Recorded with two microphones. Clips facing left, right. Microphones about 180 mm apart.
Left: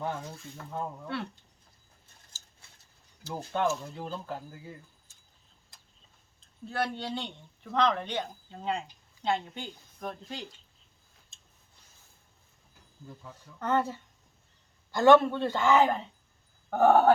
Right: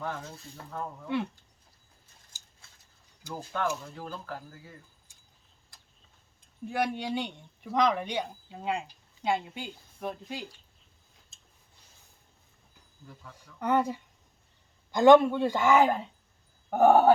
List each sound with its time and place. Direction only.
0.0 s speech: 20° left (ahead or behind)
1.0 s a man's voice: 15° right (ahead or behind)
3.3 s speech: 20° left (ahead or behind)
6.4 s speech: 15° right (ahead or behind)
13.3 s a man's voice: 15° right (ahead or behind)
16.6 s a sound: 10° right (ahead or behind)